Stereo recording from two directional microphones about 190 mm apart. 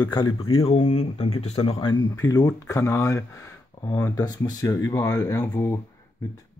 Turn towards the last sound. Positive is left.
turn(degrees=15)  # may be behind; listen again after turning